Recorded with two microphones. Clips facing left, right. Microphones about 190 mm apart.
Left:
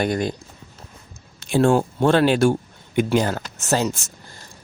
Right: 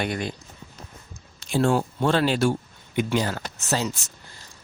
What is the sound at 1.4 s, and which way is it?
Speech, 55° left (ahead or behind).